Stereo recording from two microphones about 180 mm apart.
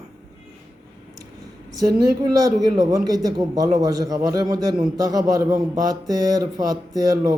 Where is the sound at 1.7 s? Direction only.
20° right (ahead or behind).